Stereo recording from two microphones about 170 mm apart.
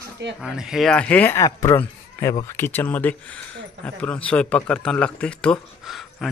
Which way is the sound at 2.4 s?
15° left (ahead or behind).